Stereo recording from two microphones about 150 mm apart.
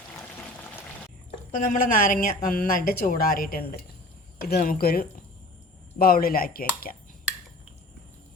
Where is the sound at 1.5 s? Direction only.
65° left (ahead or behind); by 3.8 s 85° left.